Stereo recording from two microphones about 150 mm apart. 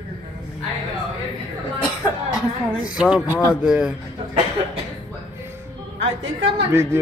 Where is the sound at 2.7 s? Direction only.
5° right (ahead or behind).